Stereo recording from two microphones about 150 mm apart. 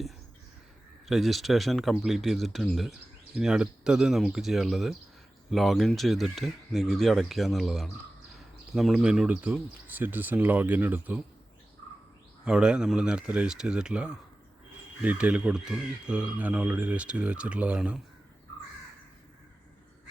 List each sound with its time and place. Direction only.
1.0 s speech: centre (ahead or behind)
11.8 s bird: 25° left (ahead or behind)
12.5 s speech: 5° right (ahead or behind)